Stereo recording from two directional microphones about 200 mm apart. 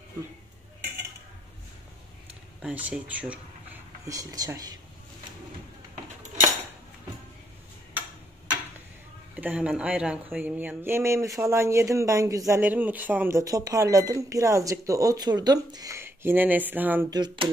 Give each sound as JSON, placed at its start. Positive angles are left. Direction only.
{"t": 2.6, "sound": "speech", "side_deg": -5}
{"t": 4.1, "sound": "speech", "side_deg": -15}
{"t": 9.3, "sound": "speech", "side_deg": -5}
{"t": 17.1, "sound": "speech", "side_deg": -20}